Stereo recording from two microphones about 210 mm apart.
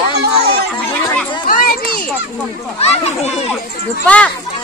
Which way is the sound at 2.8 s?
30° left (ahead or behind).